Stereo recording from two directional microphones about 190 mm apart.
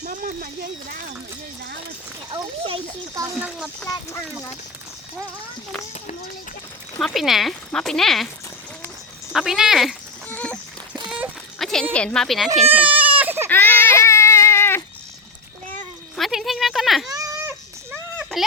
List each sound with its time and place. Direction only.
0.0 s speech: 45° right (ahead or behind)
2.3 s a child's voice: 30° right (ahead or behind)
3.4 s speech: centre (ahead or behind)
7.0 s speech: centre (ahead or behind)
9.3 s speech: centre (ahead or behind)
10.2 s a sound: 10° left (ahead or behind)
12.6 s baby cry: 10° right (ahead or behind)
13.5 s baby cry: 10° left (ahead or behind)
16.1 s speech: centre (ahead or behind)
17.1 s a sound: 20° right (ahead or behind)
18.2 s a sound: centre (ahead or behind)